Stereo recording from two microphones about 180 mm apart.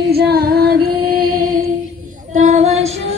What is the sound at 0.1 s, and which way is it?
Music, 60° right (ahead or behind).